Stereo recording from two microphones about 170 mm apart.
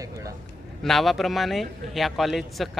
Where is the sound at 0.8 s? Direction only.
Centre (ahead or behind).